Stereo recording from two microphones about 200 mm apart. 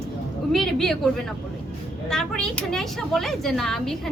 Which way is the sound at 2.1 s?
5° left (ahead or behind).